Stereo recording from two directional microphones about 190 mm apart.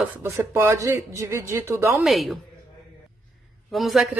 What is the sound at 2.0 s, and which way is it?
Speech, centre (ahead or behind).